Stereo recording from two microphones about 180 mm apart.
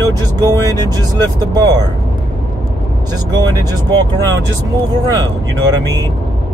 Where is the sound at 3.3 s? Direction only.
20° right (ahead or behind).